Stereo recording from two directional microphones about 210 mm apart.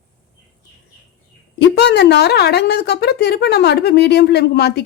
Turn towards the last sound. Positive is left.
turn(degrees=50)  # may be behind; listen again after turning